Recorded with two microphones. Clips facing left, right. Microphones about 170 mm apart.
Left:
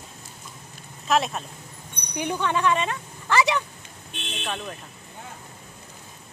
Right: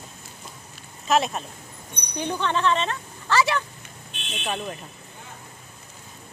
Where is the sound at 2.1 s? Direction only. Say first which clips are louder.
Even; 10° left (ahead or behind).